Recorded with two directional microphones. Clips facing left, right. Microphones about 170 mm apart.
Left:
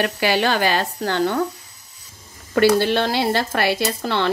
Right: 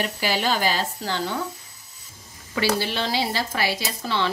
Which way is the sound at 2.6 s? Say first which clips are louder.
Left 8 dB; 60° left (ahead or behind).